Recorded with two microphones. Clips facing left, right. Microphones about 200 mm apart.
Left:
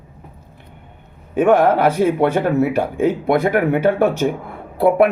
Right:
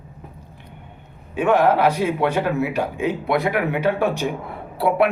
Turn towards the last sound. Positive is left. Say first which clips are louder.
# left 5 dB
turn(degrees=45)  # may be behind; listen again after turning